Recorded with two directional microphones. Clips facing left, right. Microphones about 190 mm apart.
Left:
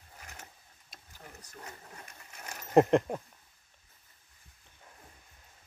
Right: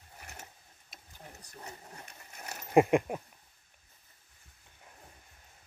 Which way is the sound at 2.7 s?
10° right (ahead or behind).